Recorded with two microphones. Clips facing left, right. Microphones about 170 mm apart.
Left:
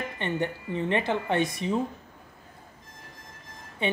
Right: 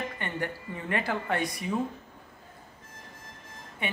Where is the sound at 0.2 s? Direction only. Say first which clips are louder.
Left 5 dB; 25° left (ahead or behind).